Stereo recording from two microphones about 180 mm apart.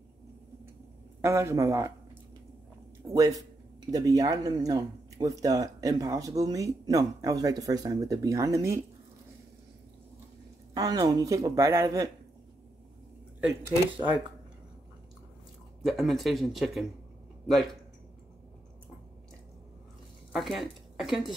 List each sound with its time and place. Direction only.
1.2 s a man's voice: 15° right (ahead or behind)
3.1 s speech: 20° right (ahead or behind)
10.7 s speech: 20° right (ahead or behind)
13.4 s speech: 15° right (ahead or behind)
15.8 s speech: centre (ahead or behind)
20.3 s a woman's voice: centre (ahead or behind)